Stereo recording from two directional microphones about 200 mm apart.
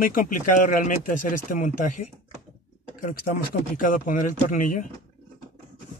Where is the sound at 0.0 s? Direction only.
45° left (ahead or behind).